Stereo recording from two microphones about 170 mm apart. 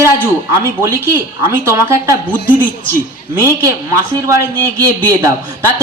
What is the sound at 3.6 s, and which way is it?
A woman's voice, 15° right (ahead or behind).